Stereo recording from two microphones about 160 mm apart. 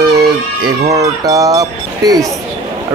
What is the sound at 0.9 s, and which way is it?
Speech, 20° right (ahead or behind).